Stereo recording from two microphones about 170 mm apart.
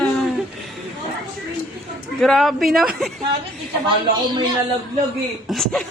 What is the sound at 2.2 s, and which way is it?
Speech, centre (ahead or behind).